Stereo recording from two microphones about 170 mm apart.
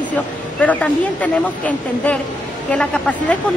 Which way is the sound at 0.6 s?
10° left (ahead or behind).